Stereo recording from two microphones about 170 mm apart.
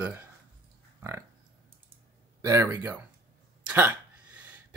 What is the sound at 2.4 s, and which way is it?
Speech, 20° right (ahead or behind).